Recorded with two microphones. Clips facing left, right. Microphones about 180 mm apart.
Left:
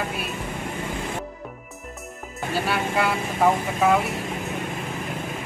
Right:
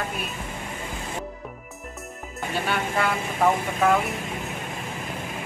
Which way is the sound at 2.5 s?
5° left (ahead or behind).